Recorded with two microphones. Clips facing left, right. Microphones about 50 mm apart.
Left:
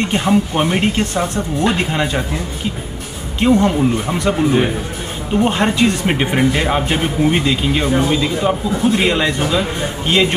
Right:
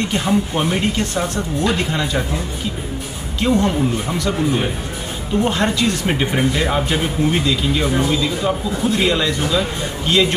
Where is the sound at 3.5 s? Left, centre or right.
Centre.